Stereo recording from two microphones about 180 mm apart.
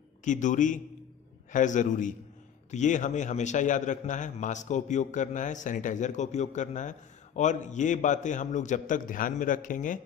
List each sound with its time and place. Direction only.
0.2 s a man's voice: 45° left (ahead or behind)